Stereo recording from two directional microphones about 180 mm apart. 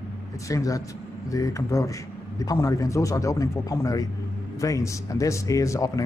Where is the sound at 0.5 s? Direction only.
20° left (ahead or behind).